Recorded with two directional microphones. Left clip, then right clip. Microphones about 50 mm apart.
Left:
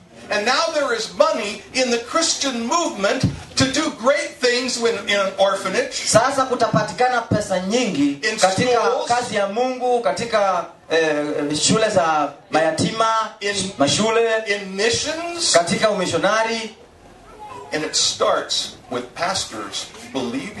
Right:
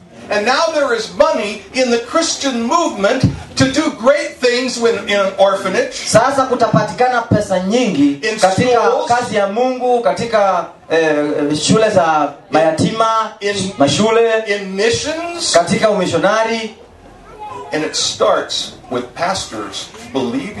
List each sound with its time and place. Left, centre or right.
0.5 s speech: centre
17.8 s speech: centre